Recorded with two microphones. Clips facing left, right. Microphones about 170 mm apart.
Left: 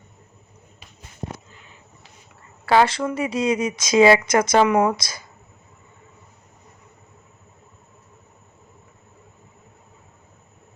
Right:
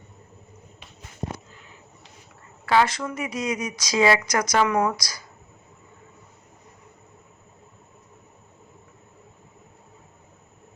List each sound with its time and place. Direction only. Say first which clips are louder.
2.6 s speech: left 3 dB; 30° left (ahead or behind)